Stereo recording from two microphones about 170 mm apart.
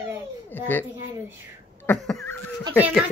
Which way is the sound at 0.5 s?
10° left (ahead or behind).